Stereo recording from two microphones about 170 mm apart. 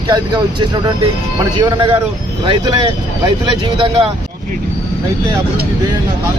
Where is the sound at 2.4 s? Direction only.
30° right (ahead or behind).